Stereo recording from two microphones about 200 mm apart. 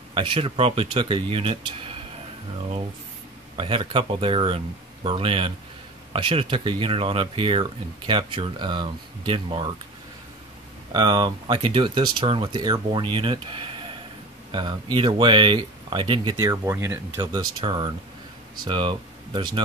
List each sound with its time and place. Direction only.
0.1 s speech: 25° right (ahead or behind)
3.5 s speech: 25° right (ahead or behind)
10.9 s speech: 20° right (ahead or behind)